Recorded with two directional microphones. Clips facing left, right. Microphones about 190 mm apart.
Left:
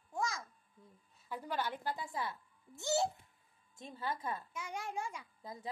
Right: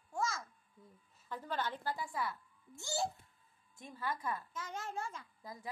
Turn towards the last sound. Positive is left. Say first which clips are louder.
# left 2 dB
turn(degrees=25)  # may be behind; listen again after turning